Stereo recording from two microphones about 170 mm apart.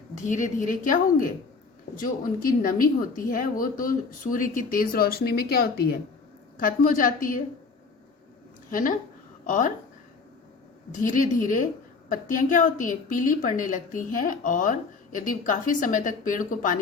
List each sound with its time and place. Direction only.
0.1 s a woman's voice: 45° left (ahead or behind); by 5.9 s 65° left (ahead or behind)
6.6 s a woman's voice: 55° left (ahead or behind)
8.7 s a woman's voice: 50° left (ahead or behind)
10.9 s a woman's voice: 50° left (ahead or behind)